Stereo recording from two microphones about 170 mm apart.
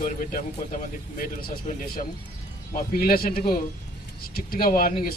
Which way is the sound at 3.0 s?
60° left (ahead or behind).